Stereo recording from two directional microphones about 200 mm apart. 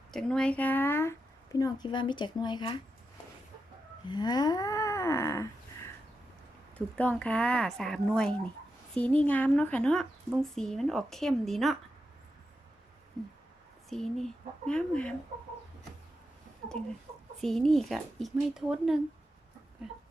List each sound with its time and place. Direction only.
0.1 s speech: 5° left (ahead or behind); by 2.7 s 20° left (ahead or behind)
4.1 s a sound: 20° left (ahead or behind)
6.7 s speech: 5° left (ahead or behind)
13.9 s speech: centre (ahead or behind)
16.6 s chicken: 45° right (ahead or behind)
17.4 s speech: centre (ahead or behind)